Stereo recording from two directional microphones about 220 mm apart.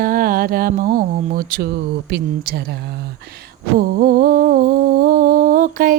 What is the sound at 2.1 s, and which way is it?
Speech, 50° right (ahead or behind).